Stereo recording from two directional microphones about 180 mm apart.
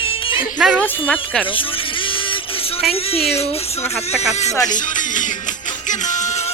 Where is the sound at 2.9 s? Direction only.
35° left (ahead or behind).